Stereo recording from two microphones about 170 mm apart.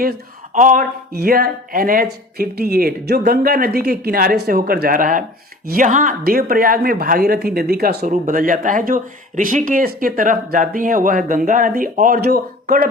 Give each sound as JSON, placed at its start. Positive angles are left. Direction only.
{"t": 0.0, "sound": "a woman's voice", "side_deg": -55}